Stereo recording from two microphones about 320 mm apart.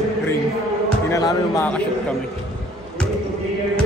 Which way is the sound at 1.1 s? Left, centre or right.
Centre.